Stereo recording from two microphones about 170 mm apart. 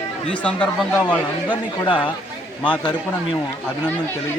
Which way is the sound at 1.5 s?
30° left (ahead or behind).